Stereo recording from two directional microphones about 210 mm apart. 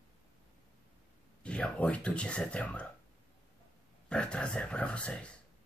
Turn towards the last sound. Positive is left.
turn(degrees=5)  # may be behind; listen again after turning